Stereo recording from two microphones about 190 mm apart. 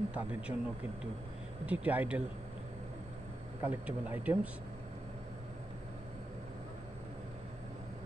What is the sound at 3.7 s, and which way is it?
Speech, 10° right (ahead or behind).